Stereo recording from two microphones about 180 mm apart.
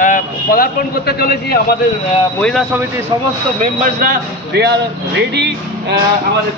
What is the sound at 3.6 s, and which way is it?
Speech, 50° right (ahead or behind).